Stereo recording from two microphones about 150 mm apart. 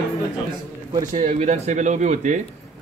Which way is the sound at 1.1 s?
55° right (ahead or behind).